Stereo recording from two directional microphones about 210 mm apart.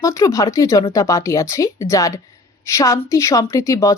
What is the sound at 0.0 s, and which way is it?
A woman's voice, 15° left (ahead or behind).